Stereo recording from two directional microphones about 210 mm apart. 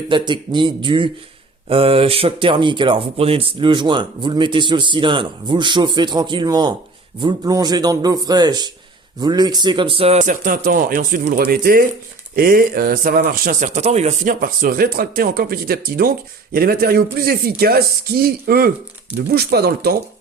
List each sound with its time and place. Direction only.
0.1 s speech: 20° right (ahead or behind); by 20.0 s 50° right (ahead or behind)